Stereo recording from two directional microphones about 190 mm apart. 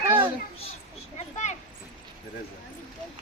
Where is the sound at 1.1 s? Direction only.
35° left (ahead or behind).